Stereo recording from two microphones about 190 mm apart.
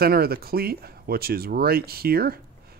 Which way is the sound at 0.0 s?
55° right (ahead or behind).